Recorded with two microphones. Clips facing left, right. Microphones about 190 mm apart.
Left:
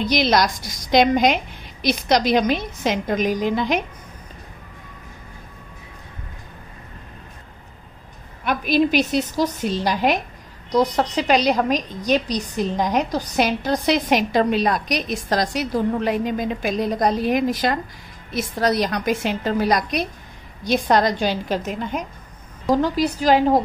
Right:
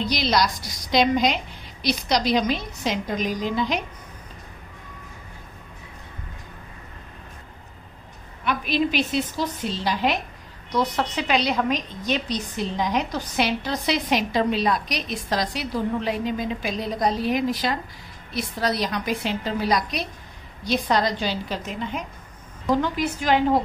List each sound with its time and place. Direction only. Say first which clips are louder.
0.1 s a woman's voice: left 5 dB; 50° left (ahead or behind)
8.5 s a woman's voice: left 5 dB; 45° left (ahead or behind)
22.7 s a woman's voice: left 4 dB; 40° left (ahead or behind)